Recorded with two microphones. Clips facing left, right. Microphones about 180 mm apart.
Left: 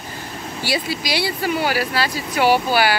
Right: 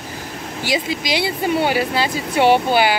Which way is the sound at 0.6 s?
15° right (ahead or behind).